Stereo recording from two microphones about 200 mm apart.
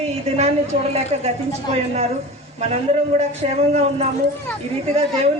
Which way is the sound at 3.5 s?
35° right (ahead or behind).